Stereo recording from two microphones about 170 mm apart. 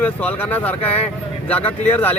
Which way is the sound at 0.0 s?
10° left (ahead or behind).